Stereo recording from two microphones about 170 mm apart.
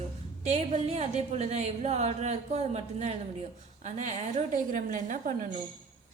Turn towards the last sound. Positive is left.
turn(degrees=-50)  # may be behind; listen again after turning